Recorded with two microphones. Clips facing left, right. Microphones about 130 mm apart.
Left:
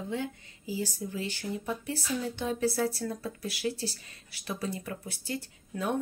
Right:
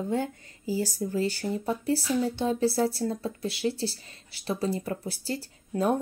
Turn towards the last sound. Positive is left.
turn(degrees=-35)  # may be behind; listen again after turning